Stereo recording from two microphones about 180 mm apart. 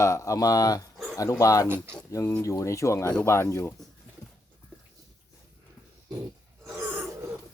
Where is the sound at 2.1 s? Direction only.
15° left (ahead or behind).